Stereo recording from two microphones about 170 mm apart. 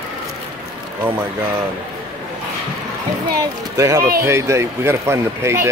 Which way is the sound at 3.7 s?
15° right (ahead or behind).